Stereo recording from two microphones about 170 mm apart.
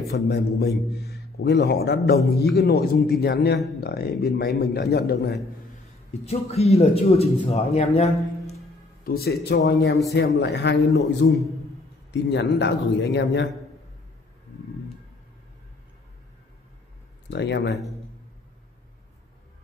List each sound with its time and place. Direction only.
0.1 s a man's voice: 75° left (ahead or behind)
6.2 s a man's voice: 35° left (ahead or behind)
9.0 s a man's voice: 65° left (ahead or behind); by 13.5 s 90° left
17.3 s speech: 85° left